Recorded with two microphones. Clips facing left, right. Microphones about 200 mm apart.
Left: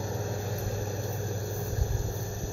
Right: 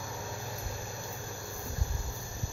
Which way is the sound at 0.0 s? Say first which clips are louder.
Left 7 dB; 40° left (ahead or behind).